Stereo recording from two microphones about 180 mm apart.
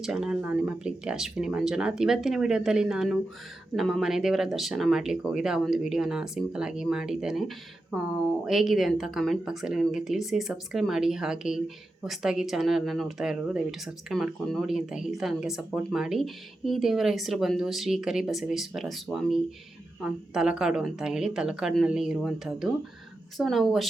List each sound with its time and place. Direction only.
0.0 s speech: 5° right (ahead or behind)